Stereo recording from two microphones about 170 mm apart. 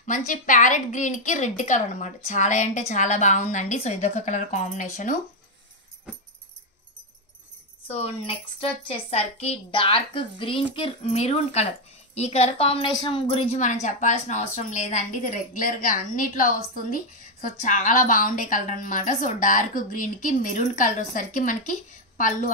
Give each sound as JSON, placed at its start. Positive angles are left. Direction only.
{"t": 0.0, "sound": "a woman's voice", "side_deg": 50}
{"t": 7.9, "sound": "a woman's voice", "side_deg": 35}